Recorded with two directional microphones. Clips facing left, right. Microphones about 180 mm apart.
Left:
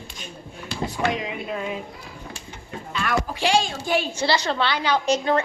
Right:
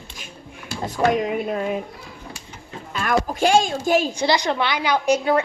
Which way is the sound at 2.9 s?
45° right (ahead or behind).